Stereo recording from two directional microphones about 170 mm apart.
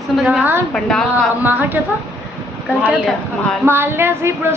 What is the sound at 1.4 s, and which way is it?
Speech, 10° right (ahead or behind).